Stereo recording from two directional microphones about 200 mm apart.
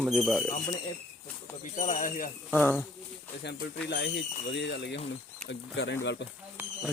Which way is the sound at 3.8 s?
60° left (ahead or behind).